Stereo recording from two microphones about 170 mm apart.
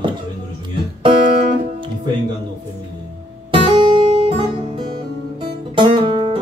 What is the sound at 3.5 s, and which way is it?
Music, 30° right (ahead or behind).